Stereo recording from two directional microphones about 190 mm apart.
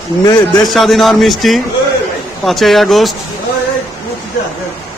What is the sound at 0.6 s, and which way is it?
A man's voice, centre (ahead or behind).